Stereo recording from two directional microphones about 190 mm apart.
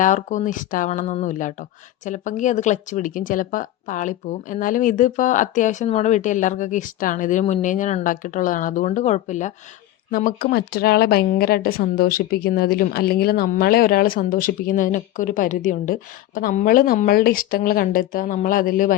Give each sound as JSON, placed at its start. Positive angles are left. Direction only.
{"t": 0.0, "sound": "speech", "side_deg": 40}
{"t": 10.1, "sound": "a woman's voice", "side_deg": 50}